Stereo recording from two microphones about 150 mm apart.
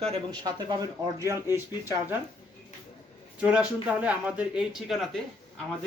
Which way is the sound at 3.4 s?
5° right (ahead or behind).